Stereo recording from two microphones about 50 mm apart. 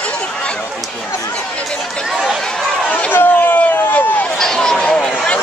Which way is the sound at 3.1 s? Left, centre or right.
Left.